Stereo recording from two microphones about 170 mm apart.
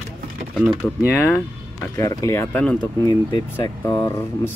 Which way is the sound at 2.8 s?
25° left (ahead or behind).